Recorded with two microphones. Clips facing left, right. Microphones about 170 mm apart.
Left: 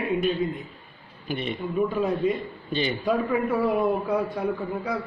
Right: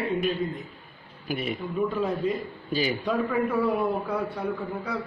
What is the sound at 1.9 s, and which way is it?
Speech, 10° left (ahead or behind).